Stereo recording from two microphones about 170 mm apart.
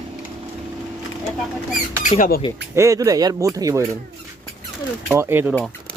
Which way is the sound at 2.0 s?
50° left (ahead or behind).